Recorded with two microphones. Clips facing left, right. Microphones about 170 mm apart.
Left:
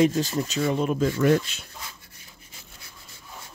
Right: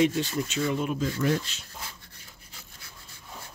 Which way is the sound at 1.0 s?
60° left (ahead or behind).